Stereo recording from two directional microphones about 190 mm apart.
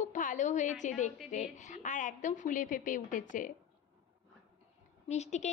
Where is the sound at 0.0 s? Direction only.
40° left (ahead or behind).